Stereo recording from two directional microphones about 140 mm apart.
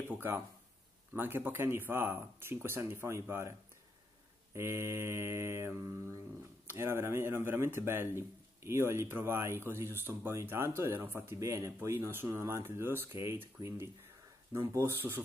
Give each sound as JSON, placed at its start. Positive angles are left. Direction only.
{"t": 0.1, "sound": "speech", "side_deg": -15}
{"t": 4.6, "sound": "mantra", "side_deg": -20}
{"t": 6.7, "sound": "speech", "side_deg": -15}